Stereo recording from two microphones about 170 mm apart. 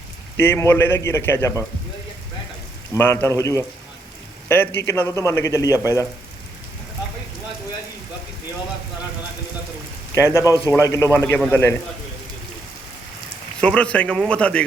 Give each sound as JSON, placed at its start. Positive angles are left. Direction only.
{"t": 0.3, "sound": "speech", "side_deg": 15}
{"t": 2.9, "sound": "speech", "side_deg": 15}
{"t": 10.2, "sound": "speech", "side_deg": 15}
{"t": 13.6, "sound": "speech", "side_deg": 5}